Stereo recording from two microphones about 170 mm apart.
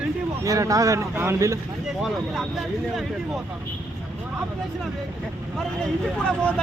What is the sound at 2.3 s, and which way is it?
Speech, centre (ahead or behind).